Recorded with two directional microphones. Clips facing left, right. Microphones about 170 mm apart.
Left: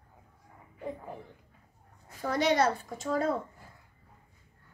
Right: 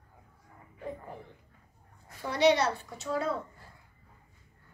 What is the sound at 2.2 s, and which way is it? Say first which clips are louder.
A woman's voice: right 1 dB; 45° left (ahead or behind).